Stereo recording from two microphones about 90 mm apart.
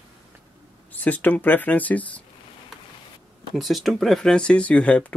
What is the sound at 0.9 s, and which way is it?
Speech, 20° left (ahead or behind).